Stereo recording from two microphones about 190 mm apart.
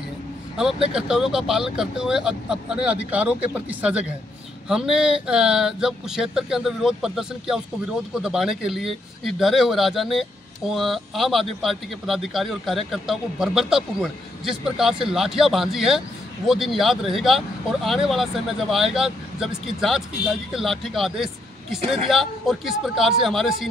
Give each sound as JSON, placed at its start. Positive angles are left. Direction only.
{"t": 0.9, "sound": "speech", "side_deg": -5}